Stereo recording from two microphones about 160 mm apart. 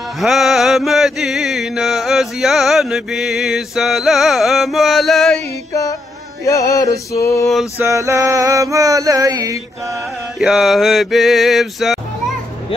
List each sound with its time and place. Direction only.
0.2 s mantra: centre (ahead or behind)
5.7 s music: 20° left (ahead or behind)
7.8 s male singing: 20° right (ahead or behind)
10.4 s mantra: centre (ahead or behind)